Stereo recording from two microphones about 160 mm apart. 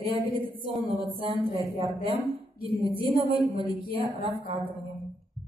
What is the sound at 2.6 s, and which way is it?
A woman's voice, 35° right (ahead or behind).